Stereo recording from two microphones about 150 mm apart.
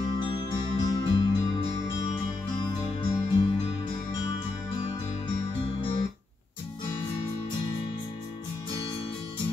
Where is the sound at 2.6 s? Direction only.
30° left (ahead or behind).